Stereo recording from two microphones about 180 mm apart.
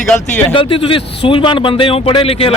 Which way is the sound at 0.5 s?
30° left (ahead or behind).